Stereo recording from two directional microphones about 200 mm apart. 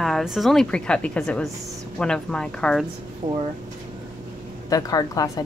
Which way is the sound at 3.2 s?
20° right (ahead or behind).